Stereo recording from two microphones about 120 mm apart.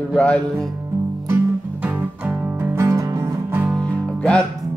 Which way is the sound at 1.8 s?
15° right (ahead or behind).